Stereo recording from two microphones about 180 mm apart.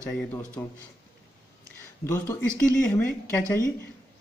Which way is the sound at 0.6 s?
10° left (ahead or behind).